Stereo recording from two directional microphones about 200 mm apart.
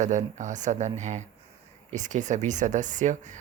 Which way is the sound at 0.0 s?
35° right (ahead or behind).